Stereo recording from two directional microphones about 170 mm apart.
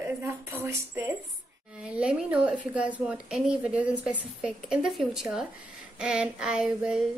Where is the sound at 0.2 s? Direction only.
15° right (ahead or behind).